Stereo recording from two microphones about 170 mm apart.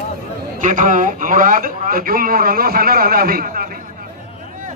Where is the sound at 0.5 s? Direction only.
50° right (ahead or behind).